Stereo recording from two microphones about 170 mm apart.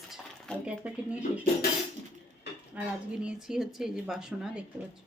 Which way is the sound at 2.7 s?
10° right (ahead or behind).